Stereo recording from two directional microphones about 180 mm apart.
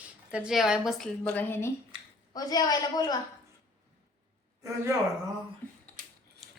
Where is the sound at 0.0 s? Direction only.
5° right (ahead or behind); by 3.2 s 20° left (ahead or behind).